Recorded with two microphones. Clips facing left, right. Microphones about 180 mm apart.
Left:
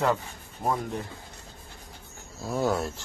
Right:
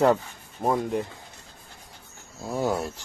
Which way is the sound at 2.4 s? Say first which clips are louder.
Even; 15° right (ahead or behind).